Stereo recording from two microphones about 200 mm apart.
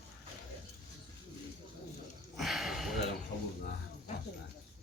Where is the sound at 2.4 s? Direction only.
Centre (ahead or behind).